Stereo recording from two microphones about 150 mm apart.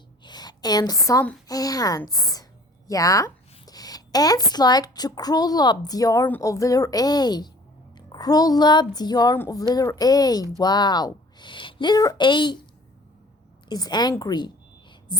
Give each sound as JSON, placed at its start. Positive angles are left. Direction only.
{"t": 0.3, "sound": "a sound", "side_deg": 25}
{"t": 1.5, "sound": "a woman's voice", "side_deg": 25}
{"t": 13.7, "sound": "a woman's voice", "side_deg": 25}